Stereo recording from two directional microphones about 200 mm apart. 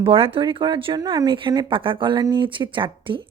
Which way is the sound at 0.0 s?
25° right (ahead or behind).